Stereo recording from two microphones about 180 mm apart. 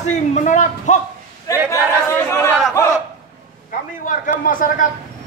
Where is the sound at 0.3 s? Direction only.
40° left (ahead or behind).